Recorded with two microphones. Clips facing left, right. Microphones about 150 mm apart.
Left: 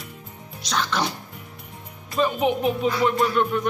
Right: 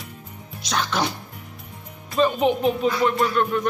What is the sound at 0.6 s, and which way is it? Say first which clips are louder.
Music: right 1 dB; 10° right (ahead or behind).